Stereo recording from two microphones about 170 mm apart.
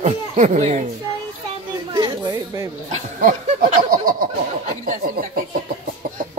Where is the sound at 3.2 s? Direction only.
55° right (ahead or behind).